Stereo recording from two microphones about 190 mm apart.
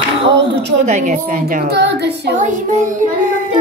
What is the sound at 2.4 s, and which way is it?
Child singing, 40° right (ahead or behind).